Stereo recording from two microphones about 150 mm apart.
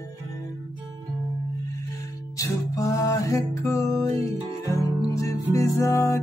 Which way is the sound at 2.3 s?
20° left (ahead or behind).